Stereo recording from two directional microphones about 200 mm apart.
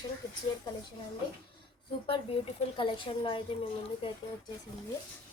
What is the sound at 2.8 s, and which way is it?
Speech, 25° left (ahead or behind).